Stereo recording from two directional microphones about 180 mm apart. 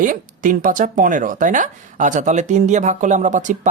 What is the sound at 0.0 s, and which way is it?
Speech, 50° right (ahead or behind).